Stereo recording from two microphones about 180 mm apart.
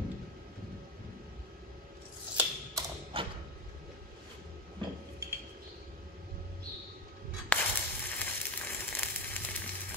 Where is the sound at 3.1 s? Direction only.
30° right (ahead or behind).